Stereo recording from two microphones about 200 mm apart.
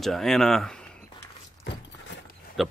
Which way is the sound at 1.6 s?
55° left (ahead or behind).